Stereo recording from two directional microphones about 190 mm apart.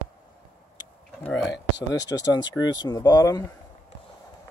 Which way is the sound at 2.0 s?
20° left (ahead or behind).